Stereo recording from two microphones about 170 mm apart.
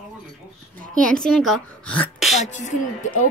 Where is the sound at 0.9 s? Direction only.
5° left (ahead or behind).